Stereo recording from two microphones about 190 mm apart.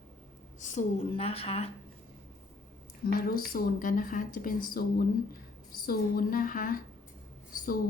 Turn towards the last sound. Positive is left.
turn(degrees=50)  # may be behind; listen again after turning